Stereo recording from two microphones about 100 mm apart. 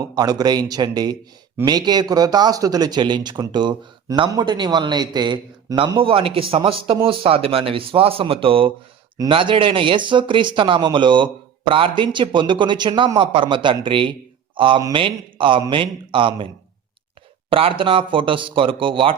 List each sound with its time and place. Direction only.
0.0 s a man's voice: 40° right (ahead or behind); by 16.5 s 55° right (ahead or behind)
17.5 s speech: 65° right (ahead or behind)